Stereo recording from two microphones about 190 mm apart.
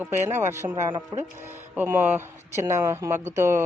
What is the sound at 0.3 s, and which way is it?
Speech, 10° right (ahead or behind).